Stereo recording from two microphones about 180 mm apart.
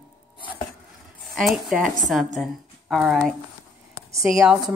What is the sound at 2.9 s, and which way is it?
Speech, centre (ahead or behind).